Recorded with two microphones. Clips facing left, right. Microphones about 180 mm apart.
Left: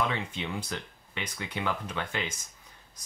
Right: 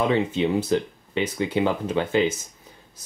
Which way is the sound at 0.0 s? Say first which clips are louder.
Right 11 dB; 30° right (ahead or behind).